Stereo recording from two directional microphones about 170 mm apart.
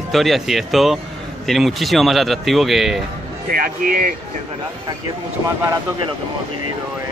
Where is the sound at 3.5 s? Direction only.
55° right (ahead or behind).